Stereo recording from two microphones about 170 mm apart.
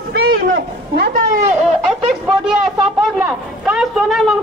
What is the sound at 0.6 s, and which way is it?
Speech, 65° right (ahead or behind).